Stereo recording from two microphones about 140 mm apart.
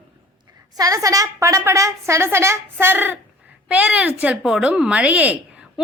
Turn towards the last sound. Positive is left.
turn(degrees=-10)  # may be behind; listen again after turning